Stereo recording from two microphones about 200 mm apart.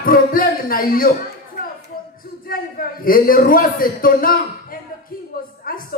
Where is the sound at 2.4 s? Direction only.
45° left (ahead or behind).